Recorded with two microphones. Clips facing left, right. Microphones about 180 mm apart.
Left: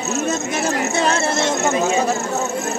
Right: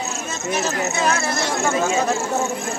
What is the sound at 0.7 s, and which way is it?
Speech, 30° left (ahead or behind).